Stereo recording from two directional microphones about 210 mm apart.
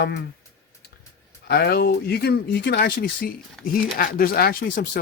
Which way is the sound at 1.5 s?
45° left (ahead or behind).